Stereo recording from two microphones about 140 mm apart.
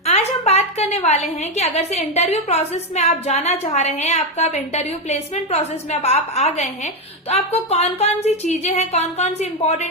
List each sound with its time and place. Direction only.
0.0 s a woman's voice: 50° left (ahead or behind)